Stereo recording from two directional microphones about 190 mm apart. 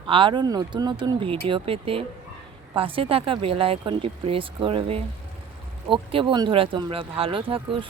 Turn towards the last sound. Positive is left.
turn(degrees=-25)  # may be behind; listen again after turning